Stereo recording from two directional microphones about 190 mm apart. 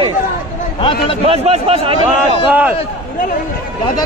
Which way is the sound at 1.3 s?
30° right (ahead or behind).